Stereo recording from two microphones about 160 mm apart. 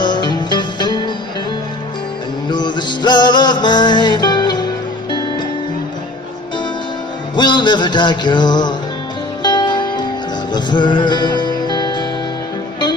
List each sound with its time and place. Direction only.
0.0 s music: 30° left (ahead or behind)
2.5 s music: 30° left (ahead or behind)
7.3 s music: 30° left (ahead or behind)